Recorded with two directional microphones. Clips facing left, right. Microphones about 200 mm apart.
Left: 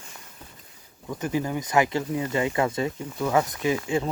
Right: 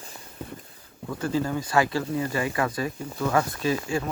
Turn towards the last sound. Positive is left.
turn(degrees=20)  # may be behind; listen again after turning